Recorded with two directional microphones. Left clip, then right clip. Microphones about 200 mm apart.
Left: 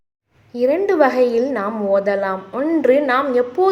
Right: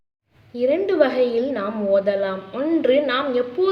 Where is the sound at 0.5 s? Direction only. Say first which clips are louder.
Left 3 dB; 20° left (ahead or behind).